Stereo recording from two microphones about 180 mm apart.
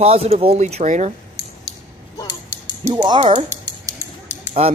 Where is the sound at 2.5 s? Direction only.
20° right (ahead or behind).